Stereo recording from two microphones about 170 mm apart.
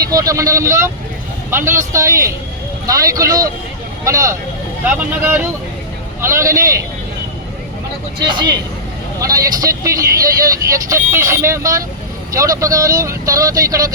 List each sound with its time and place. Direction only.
0.0 s speech: 20° right (ahead or behind)
8.2 s speech: 25° right (ahead or behind)